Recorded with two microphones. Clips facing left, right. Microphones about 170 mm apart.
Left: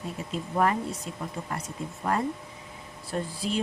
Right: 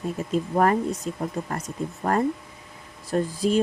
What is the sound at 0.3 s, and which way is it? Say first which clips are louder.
Speech: right 5 dB; 45° right (ahead or behind).